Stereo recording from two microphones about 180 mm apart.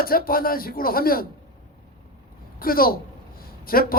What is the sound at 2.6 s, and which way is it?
A man's voice, 55° left (ahead or behind).